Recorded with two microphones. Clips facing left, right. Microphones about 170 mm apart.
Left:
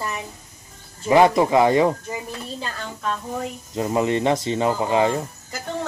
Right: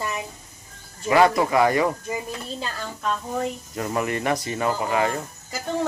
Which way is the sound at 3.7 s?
20° left (ahead or behind).